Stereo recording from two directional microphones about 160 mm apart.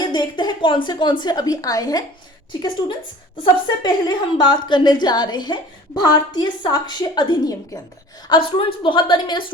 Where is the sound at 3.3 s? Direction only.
25° left (ahead or behind).